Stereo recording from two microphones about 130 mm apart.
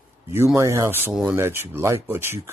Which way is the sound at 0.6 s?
25° right (ahead or behind).